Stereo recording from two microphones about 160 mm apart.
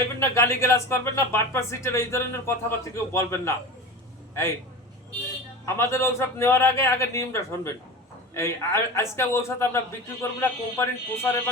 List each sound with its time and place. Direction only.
0.2 s speech: 15° left (ahead or behind)
5.6 s speech: 15° left (ahead or behind)